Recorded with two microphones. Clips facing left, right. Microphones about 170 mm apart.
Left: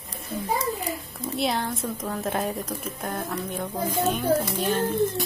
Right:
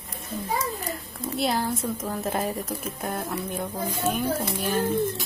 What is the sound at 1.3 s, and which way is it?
Speech, centre (ahead or behind).